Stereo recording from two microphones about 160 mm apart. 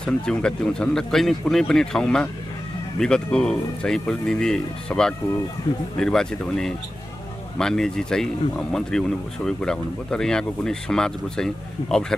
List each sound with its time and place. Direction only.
0.0 s speech: 5° left (ahead or behind)